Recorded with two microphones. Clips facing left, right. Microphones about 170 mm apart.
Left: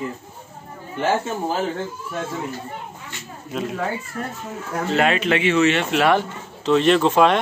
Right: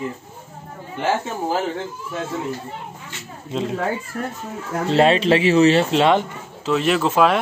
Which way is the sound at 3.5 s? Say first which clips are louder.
Right 3 dB; 25° right (ahead or behind).